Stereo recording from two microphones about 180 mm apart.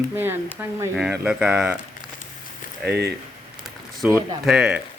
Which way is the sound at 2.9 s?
65° right (ahead or behind).